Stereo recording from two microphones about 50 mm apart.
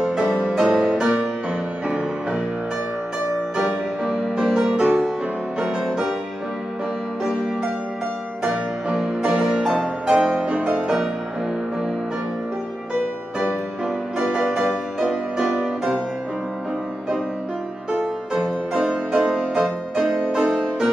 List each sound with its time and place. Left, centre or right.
0.0 s music: centre
3.5 s music: centre
4.8 s music: centre
5.6 s music: centre
8.5 s music: centre
14.3 s music: centre
15.6 s music: centre
18.3 s music: centre